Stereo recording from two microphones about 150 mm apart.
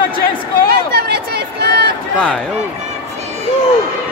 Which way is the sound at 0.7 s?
90° right.